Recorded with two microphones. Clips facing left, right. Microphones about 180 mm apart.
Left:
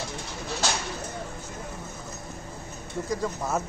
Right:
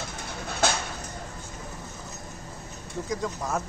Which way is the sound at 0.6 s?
55° right (ahead or behind).